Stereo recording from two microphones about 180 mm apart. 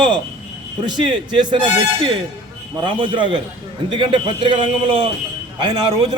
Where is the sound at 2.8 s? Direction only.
25° right (ahead or behind).